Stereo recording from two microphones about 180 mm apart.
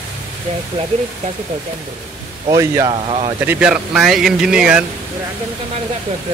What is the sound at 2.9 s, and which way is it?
Speech, 30° right (ahead or behind).